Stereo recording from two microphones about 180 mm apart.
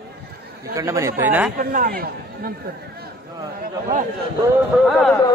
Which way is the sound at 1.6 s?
50° right (ahead or behind).